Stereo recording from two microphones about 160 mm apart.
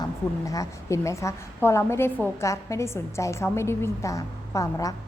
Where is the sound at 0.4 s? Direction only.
20° left (ahead or behind).